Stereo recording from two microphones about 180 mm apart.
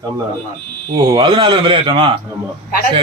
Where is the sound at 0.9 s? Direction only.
25° right (ahead or behind).